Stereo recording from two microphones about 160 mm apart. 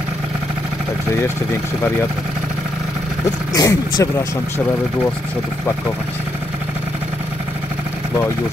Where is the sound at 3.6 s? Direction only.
20° left (ahead or behind).